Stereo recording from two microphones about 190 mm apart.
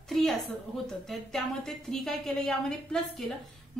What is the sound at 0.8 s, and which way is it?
A woman's voice, centre (ahead or behind).